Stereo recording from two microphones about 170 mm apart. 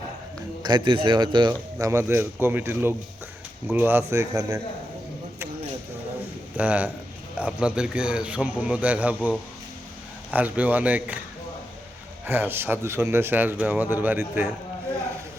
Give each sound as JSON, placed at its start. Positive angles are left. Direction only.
{"t": 0.6, "sound": "a man's voice", "side_deg": -25}
{"t": 1.9, "sound": "a man's voice", "side_deg": -15}
{"t": 6.6, "sound": "a man's voice", "side_deg": -10}
{"t": 10.3, "sound": "a man's voice", "side_deg": -10}
{"t": 12.2, "sound": "a man's voice", "side_deg": -10}